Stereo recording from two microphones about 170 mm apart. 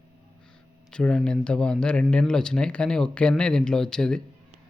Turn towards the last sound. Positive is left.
turn(degrees=5)  # may be behind; listen again after turning